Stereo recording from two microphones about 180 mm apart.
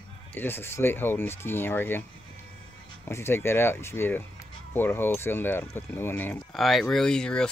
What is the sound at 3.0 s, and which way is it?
Speech, 15° left (ahead or behind).